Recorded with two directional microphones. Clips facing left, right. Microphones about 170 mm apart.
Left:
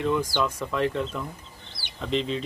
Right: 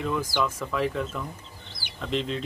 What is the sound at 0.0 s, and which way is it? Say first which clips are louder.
Speech: left 2 dB; centre (ahead or behind).